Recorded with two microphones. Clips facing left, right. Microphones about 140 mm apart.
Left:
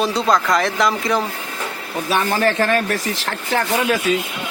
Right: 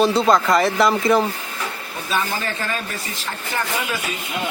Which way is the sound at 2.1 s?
75° left (ahead or behind).